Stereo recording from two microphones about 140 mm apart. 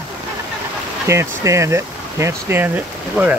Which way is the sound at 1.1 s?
20° right (ahead or behind).